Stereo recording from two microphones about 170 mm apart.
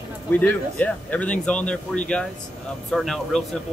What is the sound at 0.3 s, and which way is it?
Speech, 10° left (ahead or behind).